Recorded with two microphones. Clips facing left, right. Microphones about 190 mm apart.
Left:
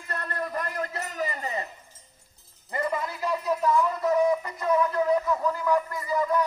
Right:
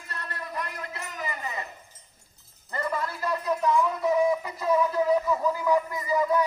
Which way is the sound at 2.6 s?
20° left (ahead or behind).